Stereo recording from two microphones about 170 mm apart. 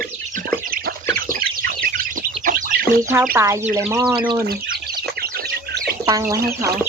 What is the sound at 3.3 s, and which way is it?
Speech, 15° right (ahead or behind).